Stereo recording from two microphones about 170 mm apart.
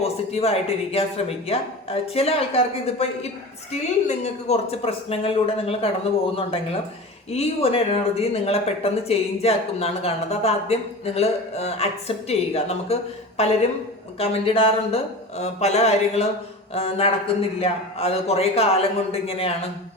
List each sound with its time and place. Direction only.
0.0 s speech: 35° left (ahead or behind)
7.3 s speech: 35° left (ahead or behind)